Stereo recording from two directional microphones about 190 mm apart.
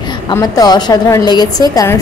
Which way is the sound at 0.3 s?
20° left (ahead or behind).